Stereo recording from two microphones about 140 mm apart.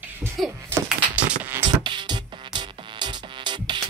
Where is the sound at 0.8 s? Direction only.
10° right (ahead or behind).